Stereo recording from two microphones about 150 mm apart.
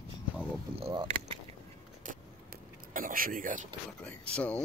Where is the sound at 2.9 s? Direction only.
70° right (ahead or behind).